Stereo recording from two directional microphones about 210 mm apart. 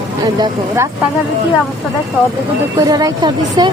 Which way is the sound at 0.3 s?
20° right (ahead or behind).